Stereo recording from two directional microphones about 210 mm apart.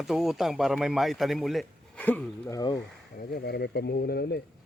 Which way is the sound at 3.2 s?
45° left (ahead or behind).